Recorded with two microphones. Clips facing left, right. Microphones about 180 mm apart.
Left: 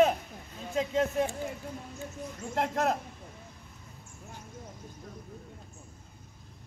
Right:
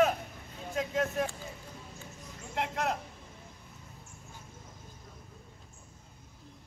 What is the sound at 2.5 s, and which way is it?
Speech, 40° left (ahead or behind).